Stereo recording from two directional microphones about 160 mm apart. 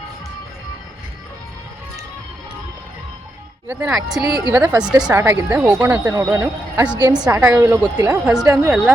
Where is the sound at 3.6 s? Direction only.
10° right (ahead or behind).